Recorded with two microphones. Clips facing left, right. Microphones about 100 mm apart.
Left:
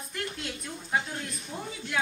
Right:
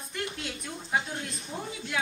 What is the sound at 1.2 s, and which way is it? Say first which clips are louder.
Speech: even; 30° right (ahead or behind).